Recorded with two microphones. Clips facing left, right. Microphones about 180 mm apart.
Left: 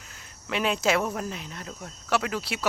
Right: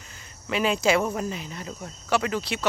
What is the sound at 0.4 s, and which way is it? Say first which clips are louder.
Speech: right 2 dB; centre (ahead or behind).